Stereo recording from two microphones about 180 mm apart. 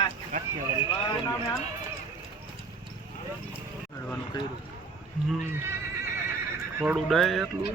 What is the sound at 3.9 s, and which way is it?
Speech, 20° left (ahead or behind).